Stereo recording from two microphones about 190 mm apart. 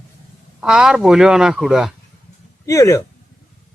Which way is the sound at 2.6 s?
15° left (ahead or behind).